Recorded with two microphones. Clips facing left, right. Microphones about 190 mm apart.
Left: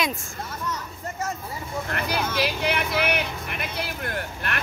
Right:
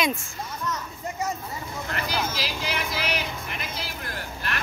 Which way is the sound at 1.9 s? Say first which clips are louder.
Left 3 dB; 60° left (ahead or behind).